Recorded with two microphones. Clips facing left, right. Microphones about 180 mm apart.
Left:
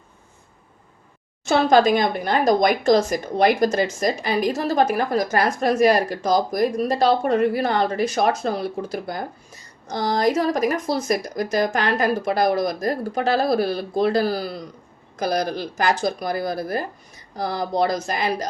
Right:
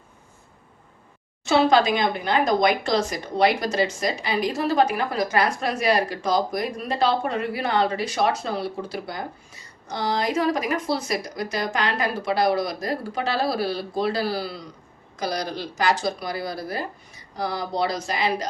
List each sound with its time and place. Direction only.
1.5 s speech: 45° left (ahead or behind)